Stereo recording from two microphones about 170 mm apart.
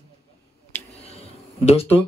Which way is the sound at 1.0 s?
35° left (ahead or behind).